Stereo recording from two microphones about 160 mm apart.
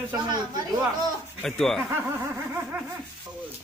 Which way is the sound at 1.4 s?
5° left (ahead or behind).